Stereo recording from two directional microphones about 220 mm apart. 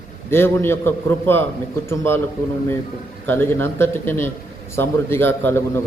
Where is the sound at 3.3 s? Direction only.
10° left (ahead or behind).